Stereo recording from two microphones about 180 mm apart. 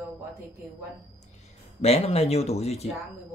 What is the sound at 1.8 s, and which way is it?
Speech, 35° left (ahead or behind).